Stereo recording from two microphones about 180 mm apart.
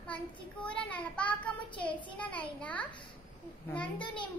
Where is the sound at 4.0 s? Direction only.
25° left (ahead or behind).